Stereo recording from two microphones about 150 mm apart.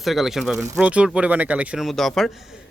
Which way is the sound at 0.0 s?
Centre (ahead or behind).